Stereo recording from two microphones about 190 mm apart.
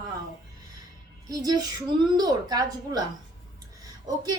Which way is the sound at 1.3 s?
20° right (ahead or behind).